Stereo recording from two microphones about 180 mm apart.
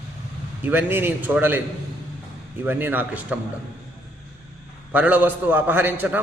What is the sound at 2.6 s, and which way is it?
Speech, 10° right (ahead or behind).